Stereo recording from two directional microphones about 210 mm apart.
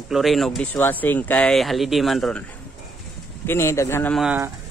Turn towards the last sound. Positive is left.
turn(degrees=0)  # may be behind; listen again after turning